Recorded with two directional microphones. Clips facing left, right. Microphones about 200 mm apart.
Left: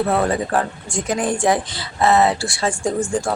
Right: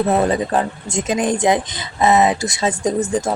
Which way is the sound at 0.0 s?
20° right (ahead or behind).